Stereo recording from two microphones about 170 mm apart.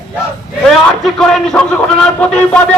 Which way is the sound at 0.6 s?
Centre (ahead or behind).